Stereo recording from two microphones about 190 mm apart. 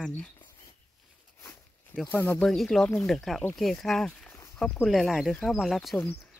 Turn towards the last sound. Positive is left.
turn(degrees=0)  # may be behind; listen again after turning